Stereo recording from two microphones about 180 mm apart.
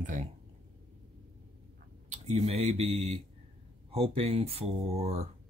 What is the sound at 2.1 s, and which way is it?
Speech, 40° right (ahead or behind).